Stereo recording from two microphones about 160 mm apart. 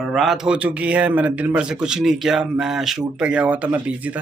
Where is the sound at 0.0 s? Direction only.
Centre (ahead or behind).